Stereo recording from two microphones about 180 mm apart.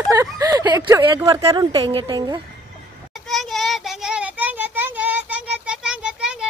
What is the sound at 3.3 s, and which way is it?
Child singing, centre (ahead or behind).